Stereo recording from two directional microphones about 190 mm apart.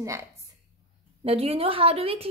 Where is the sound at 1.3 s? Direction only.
30° right (ahead or behind).